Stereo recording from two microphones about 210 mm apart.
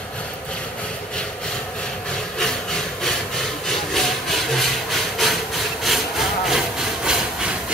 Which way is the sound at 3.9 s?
Centre (ahead or behind).